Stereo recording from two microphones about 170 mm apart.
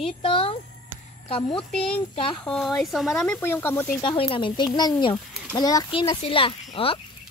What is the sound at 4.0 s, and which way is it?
Speech, 30° left (ahead or behind).